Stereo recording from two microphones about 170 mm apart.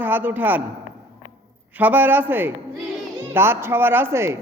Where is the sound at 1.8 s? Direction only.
10° right (ahead or behind).